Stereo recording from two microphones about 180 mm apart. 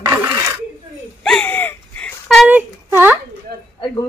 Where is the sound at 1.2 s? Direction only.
5° left (ahead or behind).